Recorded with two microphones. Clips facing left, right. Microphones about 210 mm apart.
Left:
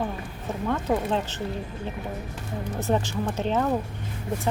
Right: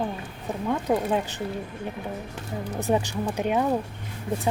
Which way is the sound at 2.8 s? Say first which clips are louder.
Right 1 dB; 15° right (ahead or behind).